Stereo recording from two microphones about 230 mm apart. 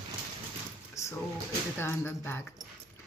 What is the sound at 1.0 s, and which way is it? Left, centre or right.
Drawer open or close, centre.